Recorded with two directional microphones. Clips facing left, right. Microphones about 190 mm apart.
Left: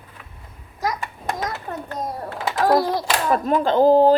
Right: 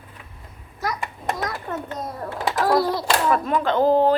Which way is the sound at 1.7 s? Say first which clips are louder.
Right 1 dB; 45° left (ahead or behind).